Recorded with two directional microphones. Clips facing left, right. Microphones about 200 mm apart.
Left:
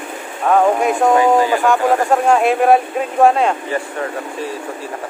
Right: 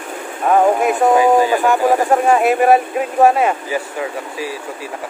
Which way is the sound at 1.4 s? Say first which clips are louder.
Even; 20° right (ahead or behind).